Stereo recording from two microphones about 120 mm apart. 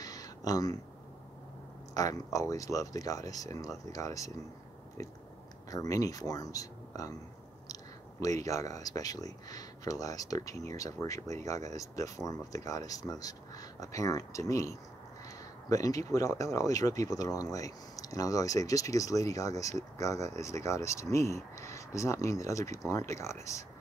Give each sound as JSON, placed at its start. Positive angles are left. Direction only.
{"t": 0.0, "sound": "a sound", "side_deg": 30}
{"t": 2.0, "sound": "speech", "side_deg": 30}
{"t": 5.7, "sound": "speech", "side_deg": 30}
{"t": 8.4, "sound": "speech", "side_deg": 25}